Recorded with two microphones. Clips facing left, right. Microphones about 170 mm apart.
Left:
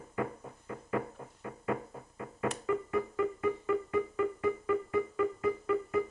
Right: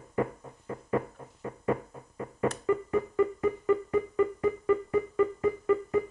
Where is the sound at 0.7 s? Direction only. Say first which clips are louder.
Right 4 dB; 35° right (ahead or behind).